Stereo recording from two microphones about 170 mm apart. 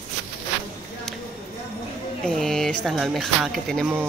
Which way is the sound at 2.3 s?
5° left (ahead or behind).